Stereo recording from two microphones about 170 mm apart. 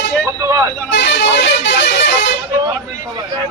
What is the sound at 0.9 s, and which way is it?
Vehicle horn, 90° left.